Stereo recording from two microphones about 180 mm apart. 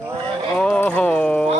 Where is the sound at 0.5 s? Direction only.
Centre (ahead or behind).